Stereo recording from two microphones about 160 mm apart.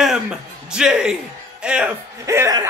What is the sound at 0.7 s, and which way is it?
A man's voice, 5° right (ahead or behind).